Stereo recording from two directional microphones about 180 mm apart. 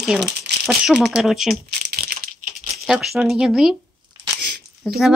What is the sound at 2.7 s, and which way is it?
Speech, centre (ahead or behind).